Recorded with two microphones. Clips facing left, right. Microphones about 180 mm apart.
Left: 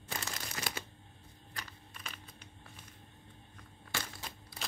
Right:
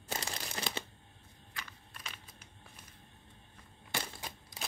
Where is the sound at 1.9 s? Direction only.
Centre (ahead or behind).